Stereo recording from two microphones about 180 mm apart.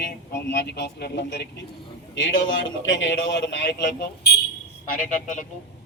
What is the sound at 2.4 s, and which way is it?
A man's voice, 90° left.